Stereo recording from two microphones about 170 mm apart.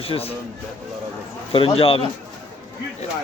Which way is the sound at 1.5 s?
35° left (ahead or behind).